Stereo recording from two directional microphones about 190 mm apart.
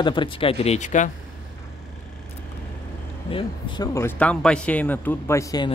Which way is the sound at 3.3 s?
25° left (ahead or behind).